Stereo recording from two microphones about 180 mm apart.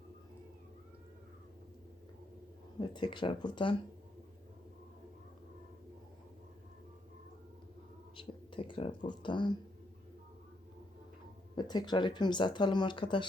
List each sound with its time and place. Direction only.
2.9 s speech: 25° left (ahead or behind)
8.1 s a sound: 30° left (ahead or behind)
11.5 s speech: 25° left (ahead or behind)